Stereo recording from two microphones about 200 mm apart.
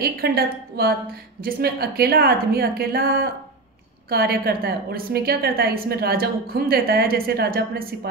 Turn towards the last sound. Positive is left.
turn(degrees=-50)  # may be behind; listen again after turning